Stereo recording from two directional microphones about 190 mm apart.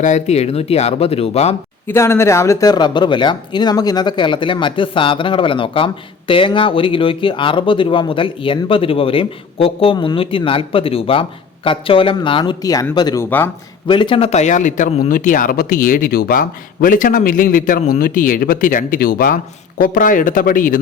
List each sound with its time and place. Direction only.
0.0 s speech: 35° left (ahead or behind)
1.9 s a man's voice: 15° left (ahead or behind); by 20.8 s 45° left (ahead or behind)